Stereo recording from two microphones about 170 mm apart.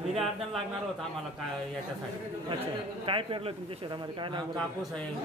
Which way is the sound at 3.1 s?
30° right (ahead or behind).